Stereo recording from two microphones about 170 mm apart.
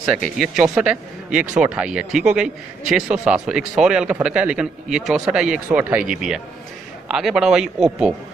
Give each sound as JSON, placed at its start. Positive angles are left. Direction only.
{"t": 0.0, "sound": "speech", "side_deg": -5}